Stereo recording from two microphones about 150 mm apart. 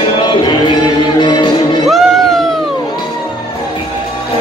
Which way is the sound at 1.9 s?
Centre (ahead or behind).